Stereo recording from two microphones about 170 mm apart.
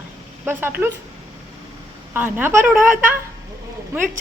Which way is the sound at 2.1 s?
10° right (ahead or behind).